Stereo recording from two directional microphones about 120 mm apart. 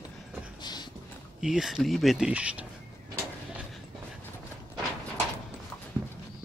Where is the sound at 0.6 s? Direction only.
35° left (ahead or behind).